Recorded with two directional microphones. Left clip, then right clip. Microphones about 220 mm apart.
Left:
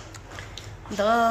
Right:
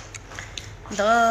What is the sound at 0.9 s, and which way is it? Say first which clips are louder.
Speech: right 2 dB; 10° left (ahead or behind).